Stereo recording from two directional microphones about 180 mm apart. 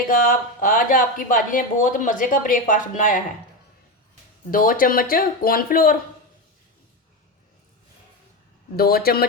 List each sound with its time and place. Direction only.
0.1 s speech: 50° left (ahead or behind)
4.5 s speech: 50° left (ahead or behind)
8.7 s speech: 55° left (ahead or behind)